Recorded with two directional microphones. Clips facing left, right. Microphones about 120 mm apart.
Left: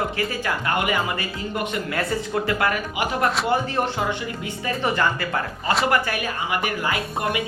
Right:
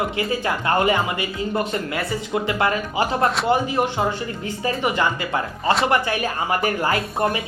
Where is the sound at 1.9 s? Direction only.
20° right (ahead or behind).